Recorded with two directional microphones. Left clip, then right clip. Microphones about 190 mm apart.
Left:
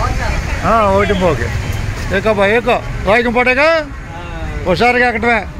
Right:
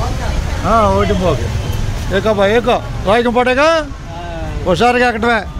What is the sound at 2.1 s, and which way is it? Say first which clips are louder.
Speech: even; 5° right (ahead or behind).